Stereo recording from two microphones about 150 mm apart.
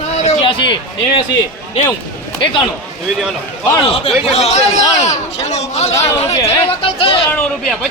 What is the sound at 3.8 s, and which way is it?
Speech, 40° left (ahead or behind).